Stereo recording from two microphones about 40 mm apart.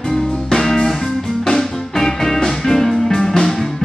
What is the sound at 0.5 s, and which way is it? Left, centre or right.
Music, centre.